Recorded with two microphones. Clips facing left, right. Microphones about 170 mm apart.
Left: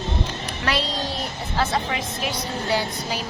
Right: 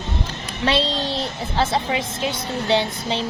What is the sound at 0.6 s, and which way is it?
A woman's voice, 25° right (ahead or behind).